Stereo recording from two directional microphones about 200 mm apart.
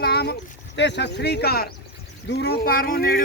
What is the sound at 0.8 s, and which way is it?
Speech, 60° left (ahead or behind).